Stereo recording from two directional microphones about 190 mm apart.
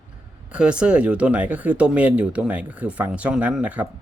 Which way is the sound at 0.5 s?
5° right (ahead or behind).